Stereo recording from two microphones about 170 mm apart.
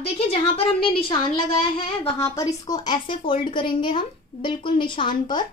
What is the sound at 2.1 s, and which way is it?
A woman's voice, 15° left (ahead or behind).